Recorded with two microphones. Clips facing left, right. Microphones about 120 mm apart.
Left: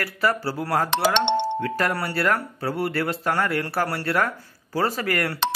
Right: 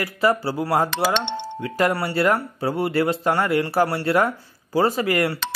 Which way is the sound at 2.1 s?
20° right (ahead or behind).